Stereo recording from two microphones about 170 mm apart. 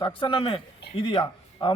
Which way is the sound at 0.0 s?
30° left (ahead or behind).